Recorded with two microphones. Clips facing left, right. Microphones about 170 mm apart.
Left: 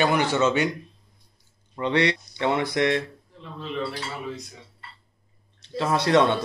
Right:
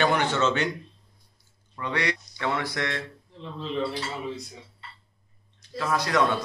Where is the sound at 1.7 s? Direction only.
25° left (ahead or behind).